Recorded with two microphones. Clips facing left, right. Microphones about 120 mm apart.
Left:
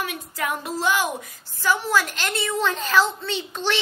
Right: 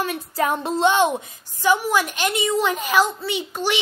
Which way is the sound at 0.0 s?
30° right (ahead or behind).